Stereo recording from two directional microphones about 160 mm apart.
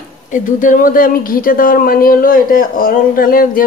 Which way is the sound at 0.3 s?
55° left (ahead or behind).